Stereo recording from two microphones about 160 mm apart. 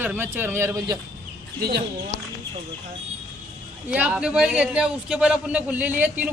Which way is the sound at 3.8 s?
10° right (ahead or behind).